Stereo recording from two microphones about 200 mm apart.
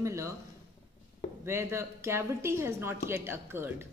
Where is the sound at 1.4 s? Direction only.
15° right (ahead or behind).